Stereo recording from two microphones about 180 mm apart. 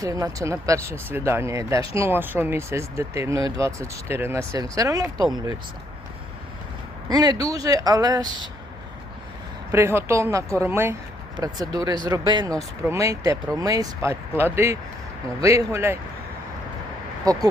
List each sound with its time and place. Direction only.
0.0 s speech: 20° right (ahead or behind)
7.1 s speech: 20° right (ahead or behind)
9.7 s speech: 15° right (ahead or behind)